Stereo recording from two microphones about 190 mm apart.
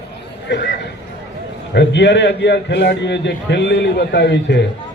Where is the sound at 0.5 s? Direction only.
65° left (ahead or behind).